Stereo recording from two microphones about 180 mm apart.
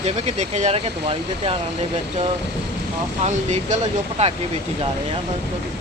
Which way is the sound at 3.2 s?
40° right (ahead or behind).